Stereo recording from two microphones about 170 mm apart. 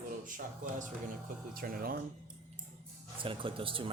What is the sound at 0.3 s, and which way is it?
Speech, 50° right (ahead or behind).